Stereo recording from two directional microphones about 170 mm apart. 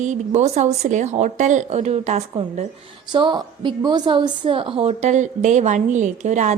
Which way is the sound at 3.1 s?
30° right (ahead or behind).